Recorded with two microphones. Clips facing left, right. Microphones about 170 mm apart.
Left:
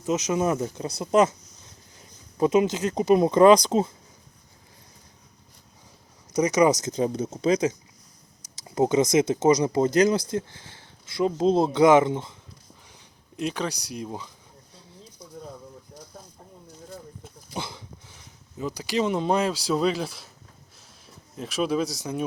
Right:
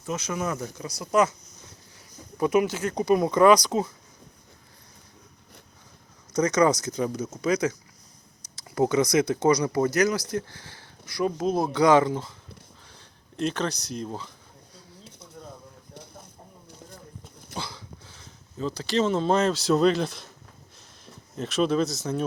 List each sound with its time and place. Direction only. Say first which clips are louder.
0.0 s speech: left 6 dB; 20° left (ahead or behind)
6.3 s speech: left 1 dB; 15° left (ahead or behind)
13.4 s speech: right 1 dB; 10° left (ahead or behind)
17.5 s a sound: left 2 dB; 20° left (ahead or behind)
21.3 s speech: right 2 dB; 10° left (ahead or behind)